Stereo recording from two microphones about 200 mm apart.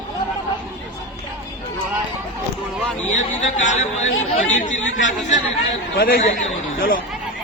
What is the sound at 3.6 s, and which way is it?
A man's voice, 35° left (ahead or behind).